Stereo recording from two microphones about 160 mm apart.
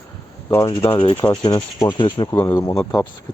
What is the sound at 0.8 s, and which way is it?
Speech, 30° left (ahead or behind).